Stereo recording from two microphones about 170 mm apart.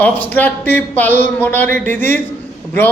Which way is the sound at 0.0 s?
10° left (ahead or behind).